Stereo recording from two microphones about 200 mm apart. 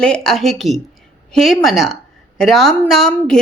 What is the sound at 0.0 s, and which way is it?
A woman's voice, 5° left (ahead or behind).